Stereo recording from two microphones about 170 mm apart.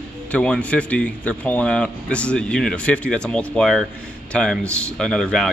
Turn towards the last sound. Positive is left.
turn(degrees=5)  # may be behind; listen again after turning